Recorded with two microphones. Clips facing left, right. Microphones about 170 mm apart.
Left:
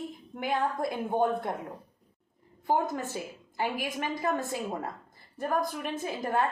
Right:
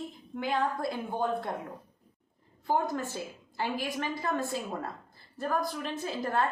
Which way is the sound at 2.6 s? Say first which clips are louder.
Left 1 dB; 20° left (ahead or behind).